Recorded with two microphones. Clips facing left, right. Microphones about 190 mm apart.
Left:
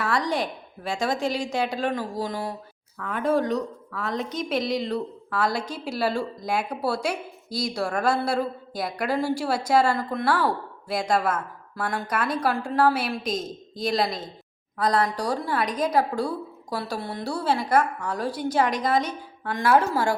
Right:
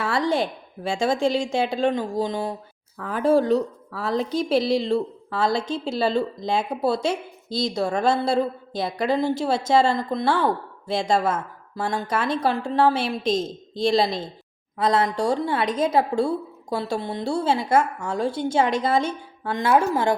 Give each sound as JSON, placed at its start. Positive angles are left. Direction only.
{"t": 0.0, "sound": "a woman's voice", "side_deg": -30}